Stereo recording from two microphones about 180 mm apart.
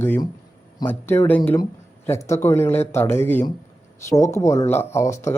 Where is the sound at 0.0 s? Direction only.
10° left (ahead or behind).